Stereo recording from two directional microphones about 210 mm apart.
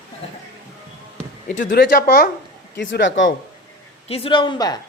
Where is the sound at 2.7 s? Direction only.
60° left (ahead or behind).